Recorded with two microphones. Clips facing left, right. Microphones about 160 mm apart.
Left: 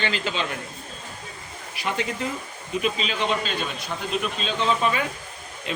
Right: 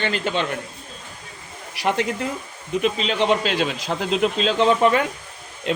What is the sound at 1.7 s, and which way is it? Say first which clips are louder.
Speech: right 6 dB; 70° right (ahead or behind).